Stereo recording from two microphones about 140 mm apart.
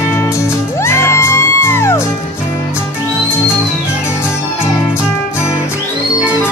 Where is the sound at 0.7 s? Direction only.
20° left (ahead or behind).